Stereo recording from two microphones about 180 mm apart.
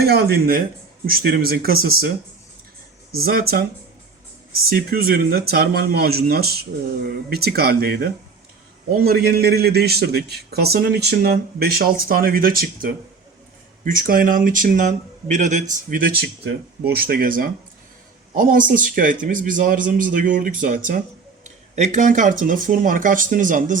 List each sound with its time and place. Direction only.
0.0 s a man's voice: 60° right (ahead or behind)
3.2 s a man's voice: 55° right (ahead or behind)